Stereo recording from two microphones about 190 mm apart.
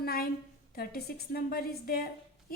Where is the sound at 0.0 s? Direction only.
50° left (ahead or behind).